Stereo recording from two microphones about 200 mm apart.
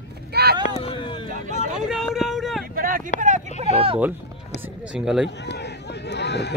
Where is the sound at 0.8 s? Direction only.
25° left (ahead or behind).